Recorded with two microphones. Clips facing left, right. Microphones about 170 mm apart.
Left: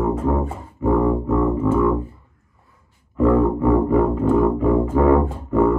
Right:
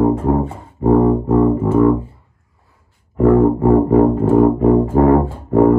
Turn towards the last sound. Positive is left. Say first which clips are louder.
# right 5 dB
turn(degrees=-40)  # may be behind; listen again after turning